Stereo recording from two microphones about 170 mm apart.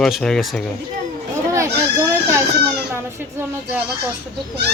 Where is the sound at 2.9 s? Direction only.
15° right (ahead or behind).